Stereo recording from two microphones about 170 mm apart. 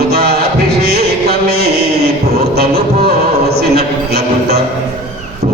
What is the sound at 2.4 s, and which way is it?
Music, 70° right (ahead or behind).